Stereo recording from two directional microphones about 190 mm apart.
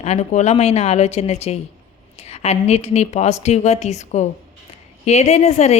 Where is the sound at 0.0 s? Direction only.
35° left (ahead or behind).